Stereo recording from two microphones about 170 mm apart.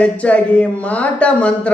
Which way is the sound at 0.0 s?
5° left (ahead or behind).